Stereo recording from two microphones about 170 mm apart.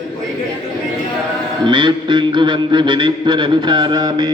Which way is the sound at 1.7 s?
25° right (ahead or behind).